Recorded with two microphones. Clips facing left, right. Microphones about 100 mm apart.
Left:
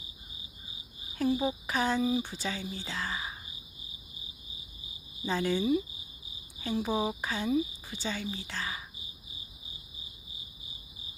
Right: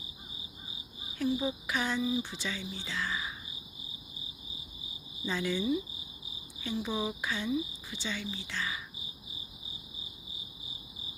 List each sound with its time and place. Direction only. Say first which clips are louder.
1.2 s speech: left 2 dB; 45° left (ahead or behind)
5.2 s speech: left 3 dB; 40° left (ahead or behind)